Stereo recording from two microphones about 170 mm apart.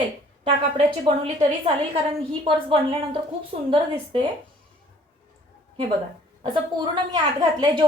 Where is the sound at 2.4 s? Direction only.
30° right (ahead or behind).